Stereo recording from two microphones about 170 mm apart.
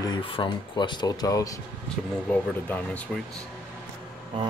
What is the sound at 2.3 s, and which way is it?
Speech, 10° left (ahead or behind).